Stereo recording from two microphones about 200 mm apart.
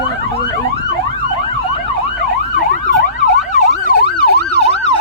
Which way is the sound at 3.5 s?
45° left (ahead or behind).